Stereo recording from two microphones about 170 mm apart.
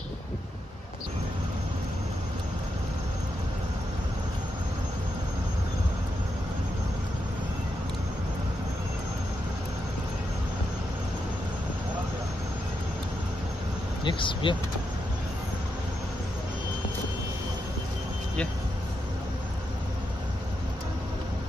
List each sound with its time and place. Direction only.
14.0 s speech: 30° left (ahead or behind)